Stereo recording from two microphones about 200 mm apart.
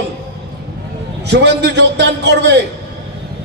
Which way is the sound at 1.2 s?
60° right (ahead or behind).